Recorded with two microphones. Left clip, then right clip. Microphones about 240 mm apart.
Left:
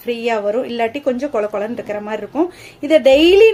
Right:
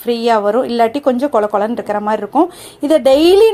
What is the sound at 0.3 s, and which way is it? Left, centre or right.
Speech, right.